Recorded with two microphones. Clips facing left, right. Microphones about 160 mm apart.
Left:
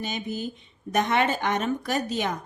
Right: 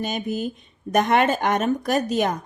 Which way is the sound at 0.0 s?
50° right (ahead or behind).